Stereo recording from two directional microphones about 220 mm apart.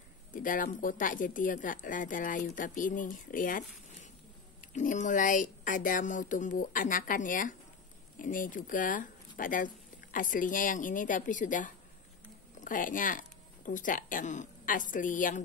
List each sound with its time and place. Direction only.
0.3 s speech: 40° left (ahead or behind)